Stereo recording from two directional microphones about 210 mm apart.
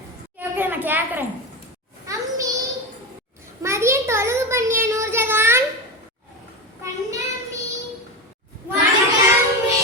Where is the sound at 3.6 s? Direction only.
15° right (ahead or behind).